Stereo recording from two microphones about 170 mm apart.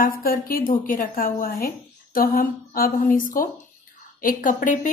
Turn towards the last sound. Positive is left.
turn(degrees=50)  # may be behind; listen again after turning